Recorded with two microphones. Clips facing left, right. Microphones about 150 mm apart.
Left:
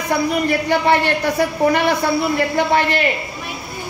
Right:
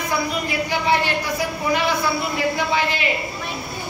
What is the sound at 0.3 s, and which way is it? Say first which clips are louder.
A woman's voice: left 6 dB; 55° left (ahead or behind).